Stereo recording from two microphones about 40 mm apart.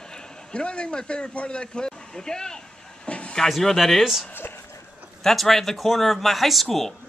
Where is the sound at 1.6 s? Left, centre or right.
Centre.